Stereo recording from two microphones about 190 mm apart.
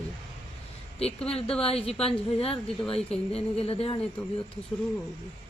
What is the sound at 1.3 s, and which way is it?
Speech, 30° left (ahead or behind).